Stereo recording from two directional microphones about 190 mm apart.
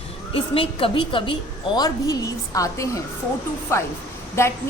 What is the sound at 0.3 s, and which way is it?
A woman's voice, 30° left (ahead or behind).